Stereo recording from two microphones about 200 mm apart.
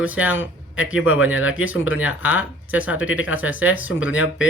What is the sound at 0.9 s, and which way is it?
Speech, 90° left.